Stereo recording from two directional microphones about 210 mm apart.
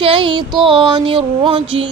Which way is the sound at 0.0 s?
25° right (ahead or behind).